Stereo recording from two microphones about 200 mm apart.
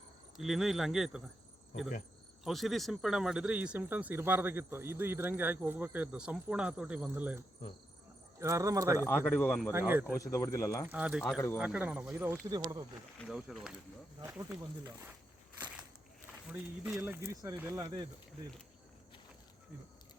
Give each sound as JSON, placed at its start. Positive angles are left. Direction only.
{"t": 0.3, "sound": "speech", "side_deg": 0}
{"t": 2.4, "sound": "speech", "side_deg": 0}
{"t": 8.4, "sound": "speech", "side_deg": -15}
{"t": 9.0, "sound": "speech", "side_deg": 10}
{"t": 9.7, "sound": "speech", "side_deg": -10}
{"t": 10.3, "sound": "speech", "side_deg": 15}
{"t": 10.8, "sound": "speech", "side_deg": -5}
{"t": 13.1, "sound": "speech", "side_deg": 0}
{"t": 14.2, "sound": "speech", "side_deg": -15}
{"t": 16.5, "sound": "speech", "side_deg": -5}